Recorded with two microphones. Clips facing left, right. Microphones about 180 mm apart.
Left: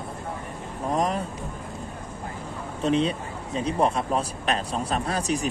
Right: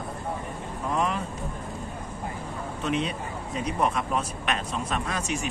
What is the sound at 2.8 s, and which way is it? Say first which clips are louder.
A man's voice: left 5 dB; 30° left (ahead or behind).